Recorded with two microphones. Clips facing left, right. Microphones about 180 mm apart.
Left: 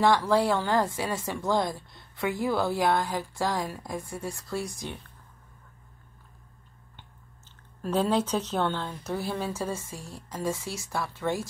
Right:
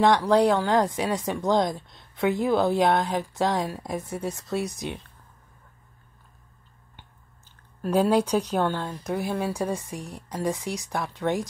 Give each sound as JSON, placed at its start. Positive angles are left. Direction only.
{"t": 0.0, "sound": "speech", "side_deg": -20}
{"t": 7.8, "sound": "speech", "side_deg": -10}